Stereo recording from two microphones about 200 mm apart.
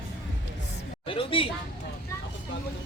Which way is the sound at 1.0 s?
25° left (ahead or behind).